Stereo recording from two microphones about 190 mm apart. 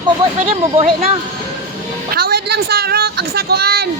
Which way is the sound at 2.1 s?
55° right (ahead or behind).